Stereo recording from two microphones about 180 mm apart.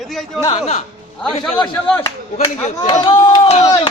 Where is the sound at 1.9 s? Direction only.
10° left (ahead or behind).